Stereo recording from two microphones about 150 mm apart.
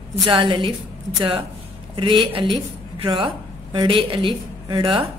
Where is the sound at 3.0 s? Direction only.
35° right (ahead or behind).